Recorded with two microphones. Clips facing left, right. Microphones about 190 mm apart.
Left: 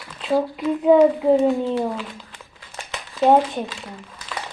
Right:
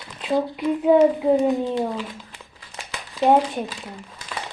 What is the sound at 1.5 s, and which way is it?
Speech, 15° right (ahead or behind).